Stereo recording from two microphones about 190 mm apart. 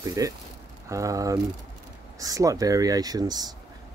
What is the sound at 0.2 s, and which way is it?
Speech, 20° right (ahead or behind).